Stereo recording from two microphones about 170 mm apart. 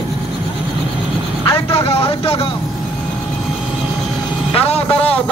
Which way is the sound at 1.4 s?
35° left (ahead or behind).